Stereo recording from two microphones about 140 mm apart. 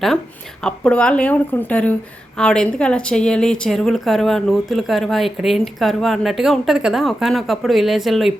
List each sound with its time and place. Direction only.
0.6 s a woman's voice: 5° left (ahead or behind)